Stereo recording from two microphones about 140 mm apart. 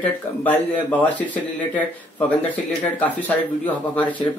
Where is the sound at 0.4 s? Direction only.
10° left (ahead or behind).